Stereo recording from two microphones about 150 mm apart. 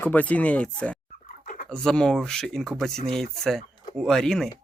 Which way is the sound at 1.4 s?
60° left (ahead or behind).